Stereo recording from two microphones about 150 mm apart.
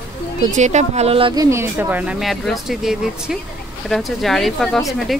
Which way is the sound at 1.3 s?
20° right (ahead or behind).